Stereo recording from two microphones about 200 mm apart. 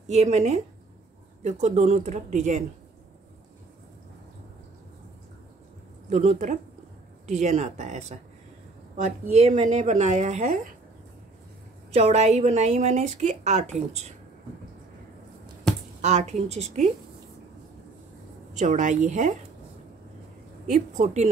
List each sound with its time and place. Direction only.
0.0 s speech: 35° right (ahead or behind)
6.0 s speech: 35° right (ahead or behind)
11.9 s speech: 30° right (ahead or behind)
16.0 s speech: 35° right (ahead or behind)
18.5 s speech: 40° right (ahead or behind)
20.6 s speech: 40° right (ahead or behind)